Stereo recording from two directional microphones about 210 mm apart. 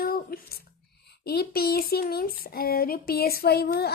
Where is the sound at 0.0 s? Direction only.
45° left (ahead or behind).